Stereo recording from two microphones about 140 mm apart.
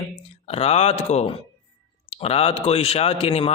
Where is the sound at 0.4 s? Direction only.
45° left (ahead or behind).